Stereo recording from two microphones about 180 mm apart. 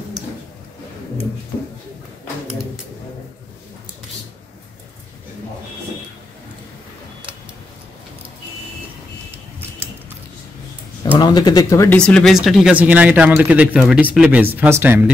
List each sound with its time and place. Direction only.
11.1 s speech: 25° left (ahead or behind)
12.0 s speech: 5° left (ahead or behind)